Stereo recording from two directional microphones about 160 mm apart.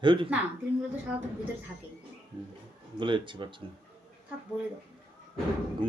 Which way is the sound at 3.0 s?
30° right (ahead or behind).